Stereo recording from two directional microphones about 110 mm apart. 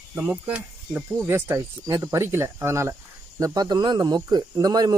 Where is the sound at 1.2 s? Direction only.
25° right (ahead or behind).